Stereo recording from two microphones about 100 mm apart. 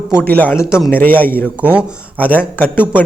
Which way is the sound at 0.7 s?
5° right (ahead or behind).